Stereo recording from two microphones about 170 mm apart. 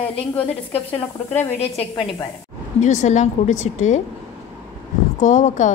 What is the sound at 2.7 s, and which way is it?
A woman's voice, 45° left (ahead or behind).